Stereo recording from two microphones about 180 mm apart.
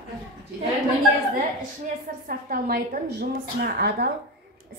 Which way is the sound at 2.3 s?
55° right (ahead or behind).